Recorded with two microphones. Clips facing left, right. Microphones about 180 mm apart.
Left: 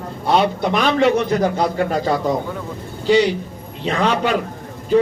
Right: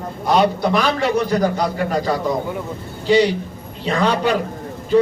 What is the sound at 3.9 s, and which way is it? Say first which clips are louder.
Speech: even; 35° right (ahead or behind).